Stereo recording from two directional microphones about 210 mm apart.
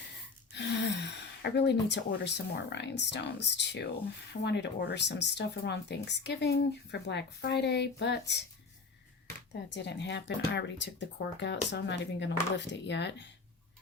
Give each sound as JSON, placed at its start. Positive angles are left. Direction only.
{"t": 0.5, "sound": "speech", "side_deg": 55}
{"t": 9.5, "sound": "speech", "side_deg": 55}